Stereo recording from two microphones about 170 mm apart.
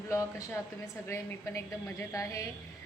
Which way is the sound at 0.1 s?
15° left (ahead or behind).